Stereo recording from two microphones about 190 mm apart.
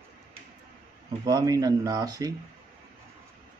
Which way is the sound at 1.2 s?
20° right (ahead or behind).